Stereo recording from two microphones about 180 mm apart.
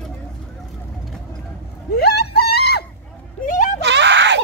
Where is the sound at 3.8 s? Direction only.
75° right (ahead or behind).